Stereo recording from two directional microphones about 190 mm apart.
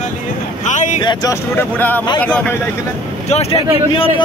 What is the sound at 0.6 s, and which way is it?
Speech, 40° left (ahead or behind).